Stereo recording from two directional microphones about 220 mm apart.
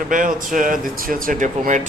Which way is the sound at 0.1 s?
35° right (ahead or behind).